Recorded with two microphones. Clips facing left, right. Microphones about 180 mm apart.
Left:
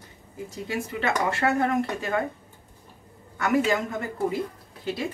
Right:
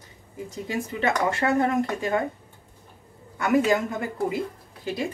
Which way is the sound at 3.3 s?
15° right (ahead or behind).